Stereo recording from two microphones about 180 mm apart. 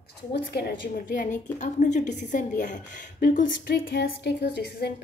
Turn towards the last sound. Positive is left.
turn(degrees=70)  # may be behind; listen again after turning